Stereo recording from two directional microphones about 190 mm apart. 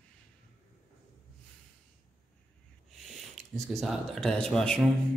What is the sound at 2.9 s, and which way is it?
Speech, centre (ahead or behind).